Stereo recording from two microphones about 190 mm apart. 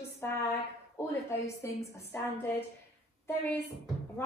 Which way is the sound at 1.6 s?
15° left (ahead or behind).